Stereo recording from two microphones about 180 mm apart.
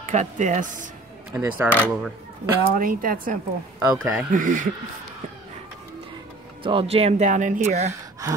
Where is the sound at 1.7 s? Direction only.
10° left (ahead or behind).